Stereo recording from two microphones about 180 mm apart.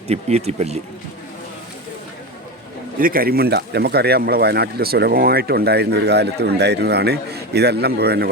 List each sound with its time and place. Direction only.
0.1 s speech: 35° right (ahead or behind)
3.0 s speech: 55° right (ahead or behind)